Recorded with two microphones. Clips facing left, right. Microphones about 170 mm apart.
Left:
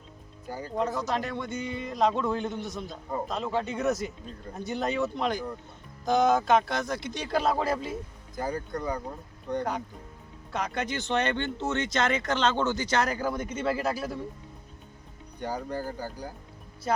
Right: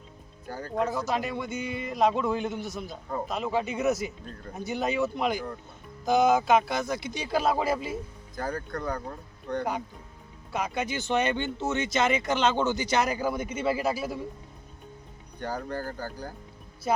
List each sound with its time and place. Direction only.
0.8 s speech: 5° right (ahead or behind)
8.4 s speech: 20° left (ahead or behind)
10.5 s speech: 5° right (ahead or behind)
15.4 s speech: 15° left (ahead or behind)